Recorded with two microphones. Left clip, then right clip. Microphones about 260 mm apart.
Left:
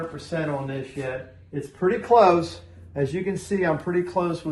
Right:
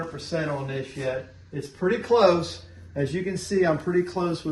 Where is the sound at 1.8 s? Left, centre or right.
Centre.